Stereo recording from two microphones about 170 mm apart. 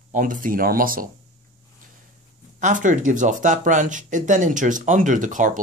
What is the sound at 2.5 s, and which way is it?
Speech, 50° right (ahead or behind).